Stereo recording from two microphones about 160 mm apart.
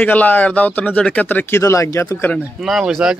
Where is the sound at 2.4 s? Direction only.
5° right (ahead or behind).